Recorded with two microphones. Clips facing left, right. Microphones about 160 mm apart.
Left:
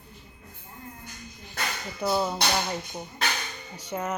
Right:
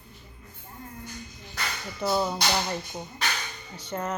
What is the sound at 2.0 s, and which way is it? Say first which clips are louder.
Speech: even; 5° left (ahead or behind).